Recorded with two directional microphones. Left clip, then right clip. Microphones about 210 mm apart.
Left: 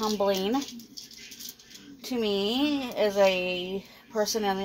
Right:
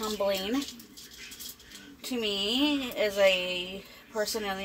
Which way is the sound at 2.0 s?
15° left (ahead or behind).